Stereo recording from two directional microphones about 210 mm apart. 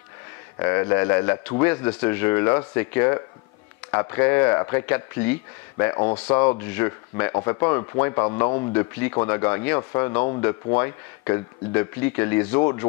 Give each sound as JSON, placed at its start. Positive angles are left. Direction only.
{"t": 0.6, "sound": "speech", "side_deg": 15}